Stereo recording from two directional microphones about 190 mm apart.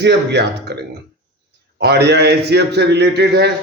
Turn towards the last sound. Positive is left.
turn(degrees=-60)  # may be behind; listen again after turning